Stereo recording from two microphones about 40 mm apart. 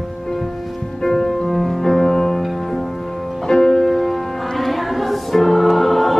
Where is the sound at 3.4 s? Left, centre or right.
Centre.